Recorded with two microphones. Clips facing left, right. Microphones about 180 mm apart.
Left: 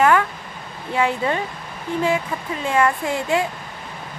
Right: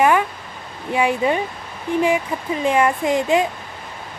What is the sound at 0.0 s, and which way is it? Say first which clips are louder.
Speech: even; 15° right (ahead or behind).